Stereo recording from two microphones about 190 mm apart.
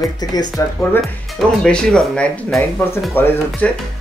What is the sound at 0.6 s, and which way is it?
Speech, 15° left (ahead or behind).